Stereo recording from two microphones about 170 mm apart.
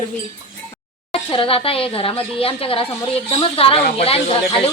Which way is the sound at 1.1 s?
30° left (ahead or behind).